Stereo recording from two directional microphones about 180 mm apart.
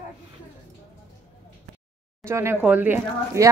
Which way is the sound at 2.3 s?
15° right (ahead or behind).